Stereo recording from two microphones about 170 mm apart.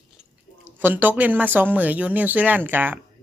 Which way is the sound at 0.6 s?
10° right (ahead or behind).